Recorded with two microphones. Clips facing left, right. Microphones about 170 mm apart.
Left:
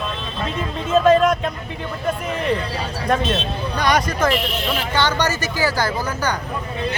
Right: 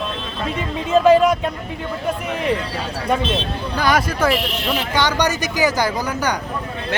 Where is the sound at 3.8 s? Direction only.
5° right (ahead or behind).